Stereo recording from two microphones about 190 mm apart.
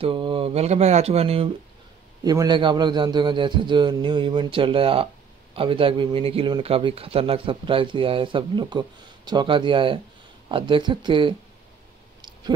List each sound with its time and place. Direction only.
0.0 s mantra: 25° right (ahead or behind)
2.2 s speech: 20° right (ahead or behind)
12.2 s a sound: 25° right (ahead or behind)